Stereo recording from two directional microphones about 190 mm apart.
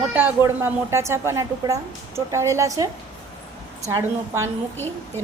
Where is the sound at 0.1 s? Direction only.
10° right (ahead or behind).